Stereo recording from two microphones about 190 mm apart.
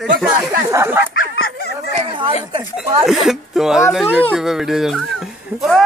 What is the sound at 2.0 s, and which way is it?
Speech, 25° right (ahead or behind).